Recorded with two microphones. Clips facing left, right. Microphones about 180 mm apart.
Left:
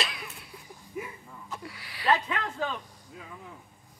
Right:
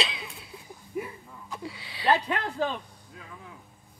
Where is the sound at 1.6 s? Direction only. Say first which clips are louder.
Right 3 dB; 25° right (ahead or behind).